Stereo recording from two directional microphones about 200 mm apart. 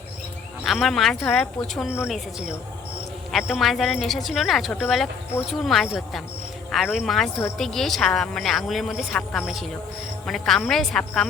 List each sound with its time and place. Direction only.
0.6 s speech: centre (ahead or behind)
3.3 s speech: centre (ahead or behind)